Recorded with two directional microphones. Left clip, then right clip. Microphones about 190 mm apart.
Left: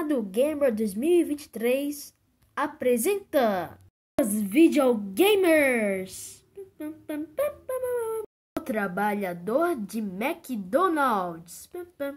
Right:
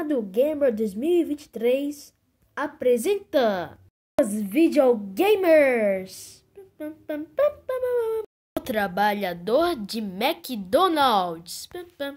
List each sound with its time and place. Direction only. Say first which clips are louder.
0.0 s speech: right 2 dB; 5° right (ahead or behind)
3.3 s speech: right 2 dB; 15° right (ahead or behind)
4.1 s speech: right 3 dB; centre (ahead or behind)